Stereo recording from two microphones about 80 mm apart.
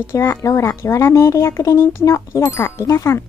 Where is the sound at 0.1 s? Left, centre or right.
Left.